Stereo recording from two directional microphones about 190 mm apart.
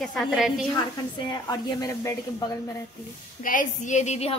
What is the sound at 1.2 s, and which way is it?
A woman's voice, 20° left (ahead or behind).